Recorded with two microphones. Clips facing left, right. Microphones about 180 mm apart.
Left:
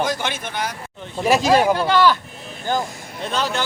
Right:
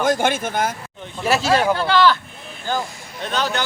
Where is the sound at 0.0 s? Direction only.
50° right (ahead or behind).